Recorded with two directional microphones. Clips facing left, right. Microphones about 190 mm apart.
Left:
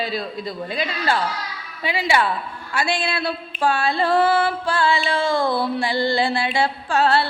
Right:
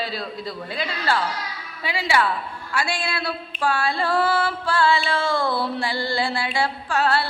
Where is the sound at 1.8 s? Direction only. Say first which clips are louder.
Left 2 dB; 20° left (ahead or behind).